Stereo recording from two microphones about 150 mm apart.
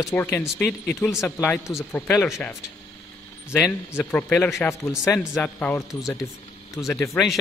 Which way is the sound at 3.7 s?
15° left (ahead or behind).